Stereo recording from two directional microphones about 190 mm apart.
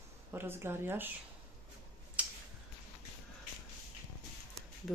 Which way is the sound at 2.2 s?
5° right (ahead or behind).